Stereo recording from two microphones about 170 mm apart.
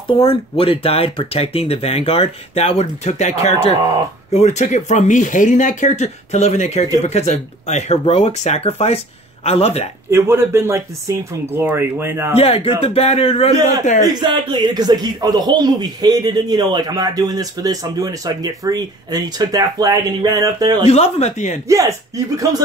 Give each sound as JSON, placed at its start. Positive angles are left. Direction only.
{"t": 0.2, "sound": "speech", "side_deg": 35}
{"t": 10.1, "sound": "speech", "side_deg": -15}
{"t": 12.4, "sound": "speech", "side_deg": 35}
{"t": 14.0, "sound": "a man's voice", "side_deg": -25}
{"t": 20.8, "sound": "speech", "side_deg": 40}
{"t": 21.6, "sound": "a man's voice", "side_deg": -20}